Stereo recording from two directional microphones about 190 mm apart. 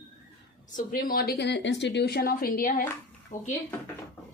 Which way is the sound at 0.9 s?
50° left (ahead or behind).